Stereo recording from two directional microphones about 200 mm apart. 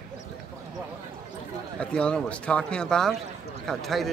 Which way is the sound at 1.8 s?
5° left (ahead or behind).